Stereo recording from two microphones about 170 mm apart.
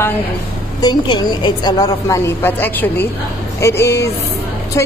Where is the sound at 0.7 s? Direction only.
25° left (ahead or behind).